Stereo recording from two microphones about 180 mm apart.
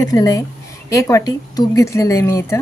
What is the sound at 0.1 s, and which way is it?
Speech, 20° left (ahead or behind).